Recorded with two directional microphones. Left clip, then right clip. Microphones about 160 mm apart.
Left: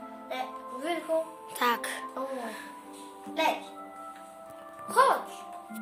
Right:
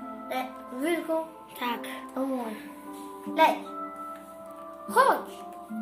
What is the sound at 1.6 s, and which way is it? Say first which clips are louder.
Speech: left 4 dB; 35° left (ahead or behind).